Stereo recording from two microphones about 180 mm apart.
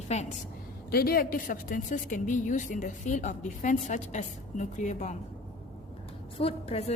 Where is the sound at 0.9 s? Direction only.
55° left (ahead or behind).